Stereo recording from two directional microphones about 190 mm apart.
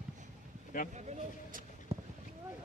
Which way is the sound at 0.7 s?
45° left (ahead or behind).